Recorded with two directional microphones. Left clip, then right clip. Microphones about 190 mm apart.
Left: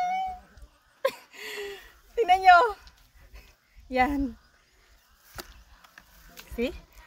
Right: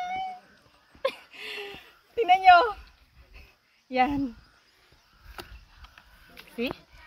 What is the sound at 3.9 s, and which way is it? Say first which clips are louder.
Speech: even; 10° left (ahead or behind).